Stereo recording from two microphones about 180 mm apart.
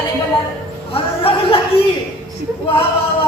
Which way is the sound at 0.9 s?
30° left (ahead or behind).